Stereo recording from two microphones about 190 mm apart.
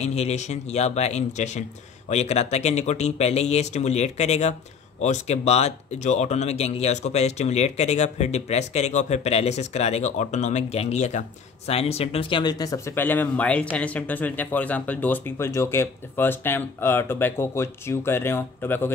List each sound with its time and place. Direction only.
0.0 s speech: 35° left (ahead or behind); by 18.9 s 10° left (ahead or behind)